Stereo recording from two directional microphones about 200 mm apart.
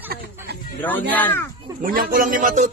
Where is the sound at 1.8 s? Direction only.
45° right (ahead or behind).